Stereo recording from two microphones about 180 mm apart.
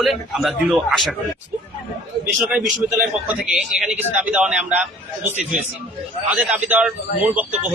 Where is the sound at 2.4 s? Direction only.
5° right (ahead or behind).